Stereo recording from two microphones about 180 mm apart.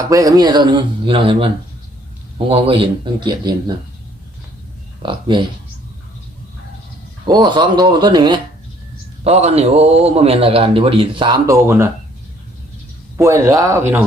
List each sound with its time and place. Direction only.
0.1 s speech: 20° right (ahead or behind)
2.5 s speech: 30° right (ahead or behind)
7.3 s speech: 25° right (ahead or behind)
9.2 s a man's voice: 35° right (ahead or behind); by 11.9 s 15° right (ahead or behind)
13.1 s speech: 15° right (ahead or behind)